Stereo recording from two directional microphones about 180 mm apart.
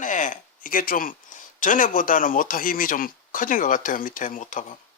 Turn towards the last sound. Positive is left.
turn(degrees=45)  # may be behind; listen again after turning